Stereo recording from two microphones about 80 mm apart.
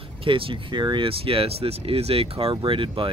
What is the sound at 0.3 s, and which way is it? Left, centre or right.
Speech, right.